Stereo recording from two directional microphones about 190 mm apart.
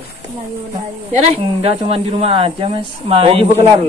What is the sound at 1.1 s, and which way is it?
Speech, 35° right (ahead or behind).